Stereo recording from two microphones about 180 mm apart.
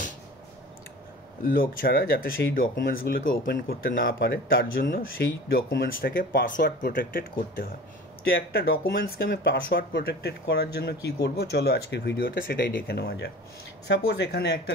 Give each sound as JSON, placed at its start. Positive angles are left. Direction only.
{"t": 1.4, "sound": "speech", "side_deg": 50}